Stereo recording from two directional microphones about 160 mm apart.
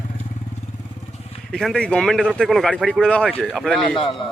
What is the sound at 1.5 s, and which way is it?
Speech, 5° left (ahead or behind).